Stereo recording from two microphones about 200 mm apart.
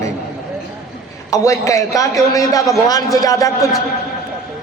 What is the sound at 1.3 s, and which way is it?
A man's voice, 15° left (ahead or behind).